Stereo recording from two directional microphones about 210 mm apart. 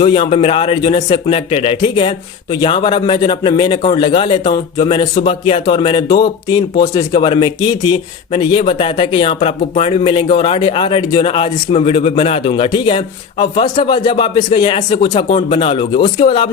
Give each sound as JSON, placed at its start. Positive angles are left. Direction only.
{"t": 0.0, "sound": "speech", "side_deg": 25}